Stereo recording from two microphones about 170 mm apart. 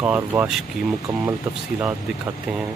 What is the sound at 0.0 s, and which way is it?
Speech, 10° right (ahead or behind).